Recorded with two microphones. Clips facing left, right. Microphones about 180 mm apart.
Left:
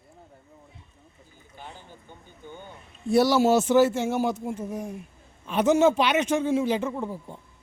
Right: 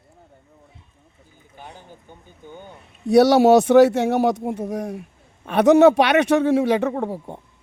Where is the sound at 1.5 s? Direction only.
15° right (ahead or behind).